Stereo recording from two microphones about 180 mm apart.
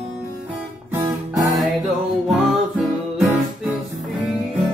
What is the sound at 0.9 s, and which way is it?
Guitar, 15° right (ahead or behind).